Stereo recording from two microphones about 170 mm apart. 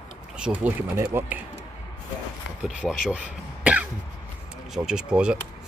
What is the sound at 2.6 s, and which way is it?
Speech, 5° right (ahead or behind).